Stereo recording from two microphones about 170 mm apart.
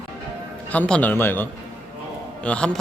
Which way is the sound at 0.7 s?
10° left (ahead or behind).